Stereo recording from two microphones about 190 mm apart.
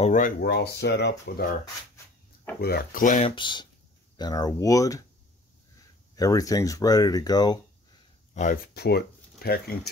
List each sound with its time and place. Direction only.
0.0 s speech: 40° left (ahead or behind)
0.4 s speech: 60° left (ahead or behind)
2.6 s speech: 50° left (ahead or behind)
3.3 s speech: 25° left (ahead or behind)
6.1 s speech: 20° left (ahead or behind)
8.7 s speech: 60° left (ahead or behind)